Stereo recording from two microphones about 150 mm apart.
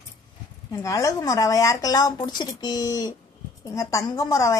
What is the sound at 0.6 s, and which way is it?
A woman's voice, 20° left (ahead or behind).